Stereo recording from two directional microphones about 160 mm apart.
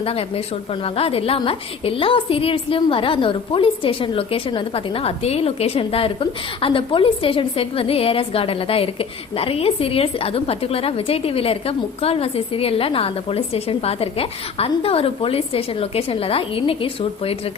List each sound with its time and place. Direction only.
0.0 s a woman's voice: 35° left (ahead or behind)